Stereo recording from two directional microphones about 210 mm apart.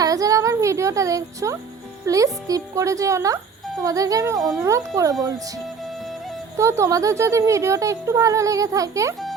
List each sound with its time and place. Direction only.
0.0 s a woman's voice: 15° right (ahead or behind)
4.4 s a child's voice: centre (ahead or behind)
4.9 s speech: 15° right (ahead or behind)
6.6 s speech: 15° right (ahead or behind)